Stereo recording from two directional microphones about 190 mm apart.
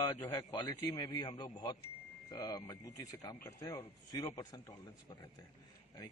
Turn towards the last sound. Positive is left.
turn(degrees=15)  # may be behind; listen again after turning